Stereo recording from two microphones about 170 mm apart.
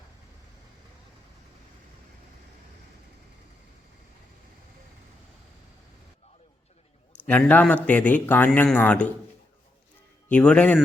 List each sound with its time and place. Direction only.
7.3 s speech: 10° left (ahead or behind)
10.2 s speech: 5° left (ahead or behind)